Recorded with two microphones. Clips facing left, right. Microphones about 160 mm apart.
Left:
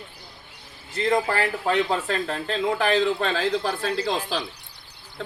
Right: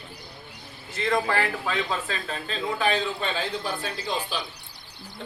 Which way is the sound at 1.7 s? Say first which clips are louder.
Left 6 dB; 65° left (ahead or behind).